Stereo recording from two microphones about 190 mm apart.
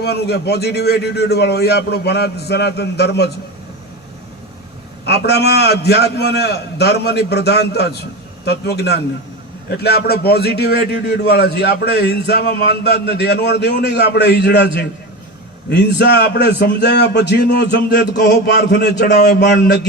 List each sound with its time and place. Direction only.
0.0 s a man's voice: 60° left (ahead or behind)
5.0 s a man's voice: 60° left (ahead or behind)